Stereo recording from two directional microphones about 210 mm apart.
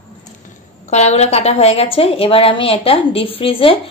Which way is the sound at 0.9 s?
30° left (ahead or behind).